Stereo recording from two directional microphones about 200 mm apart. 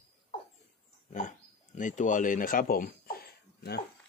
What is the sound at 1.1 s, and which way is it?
Speech, 40° left (ahead or behind).